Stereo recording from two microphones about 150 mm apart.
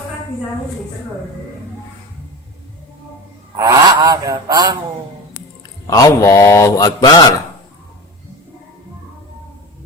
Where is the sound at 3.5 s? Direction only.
25° right (ahead or behind).